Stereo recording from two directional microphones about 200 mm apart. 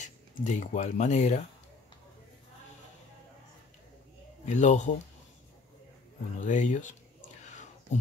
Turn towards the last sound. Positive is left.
turn(degrees=35)  # may be behind; listen again after turning